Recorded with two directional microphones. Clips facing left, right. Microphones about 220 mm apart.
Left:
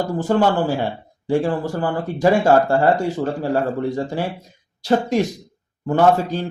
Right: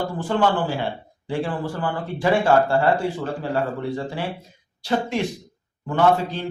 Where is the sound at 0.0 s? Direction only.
45° left (ahead or behind).